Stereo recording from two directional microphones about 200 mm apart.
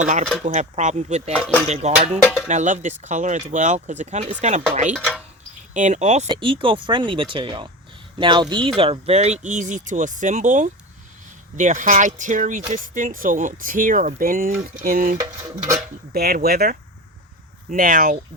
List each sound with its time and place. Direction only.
0.0 s speech: 40° right (ahead or behind)
2.2 s speech: 5° left (ahead or behind)
2.5 s speech: 35° right (ahead or behind)
4.9 s speech: centre (ahead or behind)
5.7 s speech: 40° right (ahead or behind)
6.2 s speech: 25° right (ahead or behind); by 15.2 s 45° right (ahead or behind)
15.2 s dishes: 15° right (ahead or behind)
16.1 s speech: 50° right (ahead or behind)